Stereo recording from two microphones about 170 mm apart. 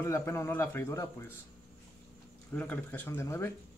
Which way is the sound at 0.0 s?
15° left (ahead or behind).